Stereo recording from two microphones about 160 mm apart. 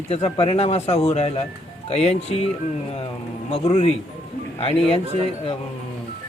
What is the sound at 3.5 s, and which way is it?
Speech, 40° left (ahead or behind).